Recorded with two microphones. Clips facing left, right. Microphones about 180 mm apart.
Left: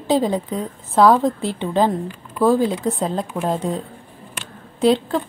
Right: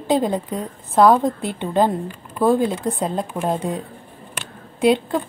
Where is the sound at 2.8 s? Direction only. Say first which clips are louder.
Left 1 dB; centre (ahead or behind).